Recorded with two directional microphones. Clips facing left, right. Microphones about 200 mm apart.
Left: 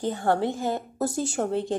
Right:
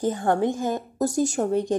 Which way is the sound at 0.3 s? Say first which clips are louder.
Right 1 dB; 15° right (ahead or behind).